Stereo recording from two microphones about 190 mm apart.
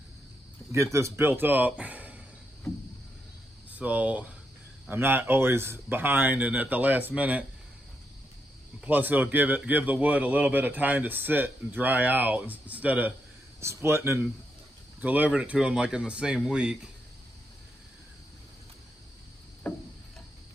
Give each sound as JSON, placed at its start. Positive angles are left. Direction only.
{"t": 0.7, "sound": "speech", "side_deg": -15}
{"t": 3.7, "sound": "a man's voice", "side_deg": -5}
{"t": 8.8, "sound": "a man's voice", "side_deg": -10}
{"t": 19.6, "sound": "a sound", "side_deg": 10}